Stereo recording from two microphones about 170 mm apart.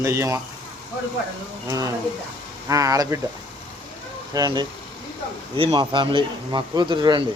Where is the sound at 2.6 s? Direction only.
20° right (ahead or behind).